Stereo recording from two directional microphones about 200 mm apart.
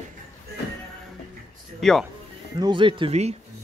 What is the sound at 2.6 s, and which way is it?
Speech, 25° right (ahead or behind).